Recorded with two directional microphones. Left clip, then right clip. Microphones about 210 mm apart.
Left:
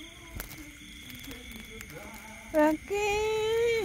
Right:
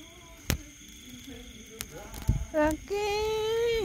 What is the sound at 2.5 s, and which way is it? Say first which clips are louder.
Child singing: left 2 dB; 5° left (ahead or behind).